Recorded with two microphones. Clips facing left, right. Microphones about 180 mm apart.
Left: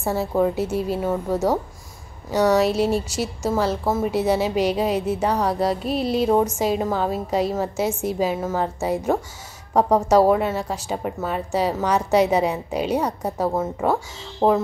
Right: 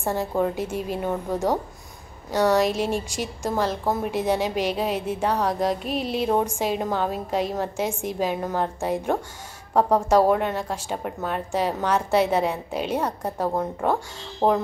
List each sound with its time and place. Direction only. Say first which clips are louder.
0.0 s a woman's voice: left 3 dB; 10° left (ahead or behind)
0.7 s speech: left 5 dB; 35° left (ahead or behind)
0.9 s a woman's voice: left 3 dB; centre (ahead or behind)
2.6 s speech: left 3 dB; 35° left (ahead or behind)
3.4 s a woman's voice: left 2 dB; 10° left (ahead or behind)
4.9 s speech: left 4 dB; 40° left (ahead or behind)
5.2 s a woman's voice: right 1 dB; 10° left (ahead or behind)
5.8 s speech: left 4 dB; 35° left (ahead or behind)
6.6 s a woman's voice: left 3 dB; 10° left (ahead or behind)